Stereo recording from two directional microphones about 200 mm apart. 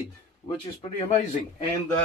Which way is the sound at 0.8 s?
30° left (ahead or behind).